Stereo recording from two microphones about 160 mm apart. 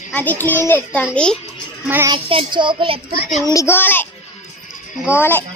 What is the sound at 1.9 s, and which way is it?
Speech, 15° right (ahead or behind).